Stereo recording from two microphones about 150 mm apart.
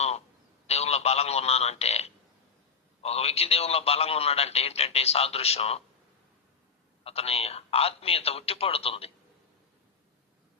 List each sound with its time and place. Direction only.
0.7 s a man's voice: 45° left (ahead or behind)
7.0 s speech: 40° left (ahead or behind)